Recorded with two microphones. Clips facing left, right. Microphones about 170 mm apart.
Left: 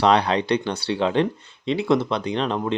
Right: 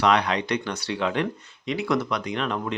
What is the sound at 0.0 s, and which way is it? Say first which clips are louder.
Speech: left 3 dB; 30° left (ahead or behind).